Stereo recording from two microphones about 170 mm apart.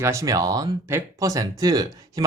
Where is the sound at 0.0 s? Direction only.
15° right (ahead or behind).